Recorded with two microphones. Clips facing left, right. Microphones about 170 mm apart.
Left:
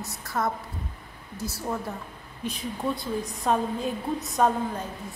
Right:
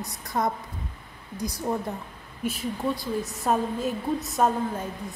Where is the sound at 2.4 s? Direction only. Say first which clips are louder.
Right 2 dB; 5° right (ahead or behind).